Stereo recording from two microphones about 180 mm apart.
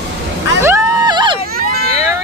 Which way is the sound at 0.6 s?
20° right (ahead or behind).